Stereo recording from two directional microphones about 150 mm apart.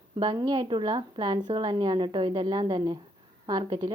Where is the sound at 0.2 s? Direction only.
30° right (ahead or behind).